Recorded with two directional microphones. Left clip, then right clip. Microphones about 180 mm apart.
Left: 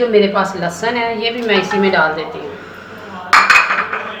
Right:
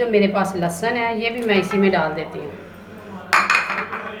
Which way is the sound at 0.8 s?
15° right (ahead or behind).